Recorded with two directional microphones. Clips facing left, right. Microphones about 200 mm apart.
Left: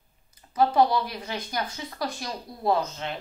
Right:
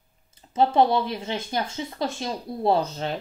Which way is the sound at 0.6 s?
25° right (ahead or behind).